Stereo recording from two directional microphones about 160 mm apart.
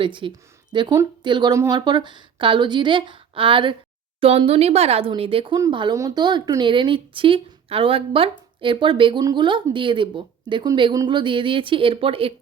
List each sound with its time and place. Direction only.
0.0 s speech: 30° right (ahead or behind)